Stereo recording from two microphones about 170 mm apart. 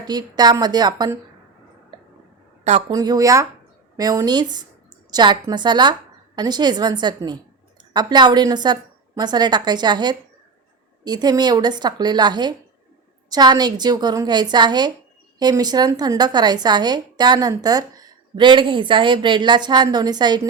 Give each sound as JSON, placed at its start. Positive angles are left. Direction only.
{"t": 0.0, "sound": "a woman's voice", "side_deg": -25}
{"t": 1.9, "sound": "a sound", "side_deg": -25}
{"t": 2.9, "sound": "a woman's voice", "side_deg": -20}